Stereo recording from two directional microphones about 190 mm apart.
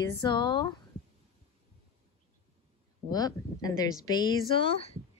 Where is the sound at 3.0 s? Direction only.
20° left (ahead or behind).